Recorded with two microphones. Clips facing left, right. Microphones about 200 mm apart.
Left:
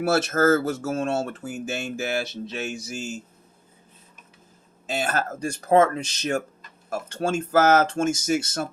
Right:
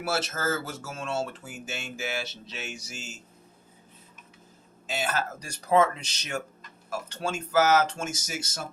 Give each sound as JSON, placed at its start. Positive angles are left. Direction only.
{"t": 0.0, "sound": "speech", "side_deg": 60}
{"t": 4.9, "sound": "speech", "side_deg": 50}